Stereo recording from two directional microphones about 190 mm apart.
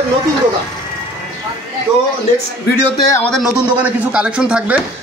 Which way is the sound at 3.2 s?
5° left (ahead or behind).